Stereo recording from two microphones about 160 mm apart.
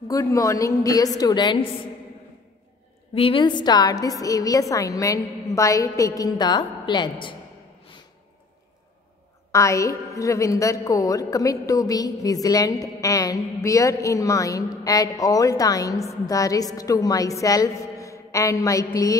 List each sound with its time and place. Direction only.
0.1 s a woman's voice: 20° left (ahead or behind)
3.2 s a woman's voice: 35° left (ahead or behind)
9.5 s a woman's voice: 20° left (ahead or behind)